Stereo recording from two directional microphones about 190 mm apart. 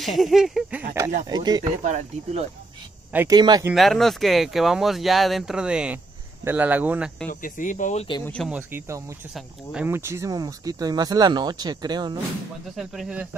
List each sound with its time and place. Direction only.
0.0 s speech: centre (ahead or behind)
1.3 s speech: 20° right (ahead or behind)
1.8 s speech: 40° right (ahead or behind)
3.1 s speech: 10° right (ahead or behind)
3.3 s speech: 20° right (ahead or behind)
3.7 s speech: centre (ahead or behind)
7.2 s speech: 45° left (ahead or behind)
8.5 s speech: 10° right (ahead or behind)
9.3 s speech: centre (ahead or behind)
9.8 s speech: 15° right (ahead or behind)
12.7 s speech: centre (ahead or behind)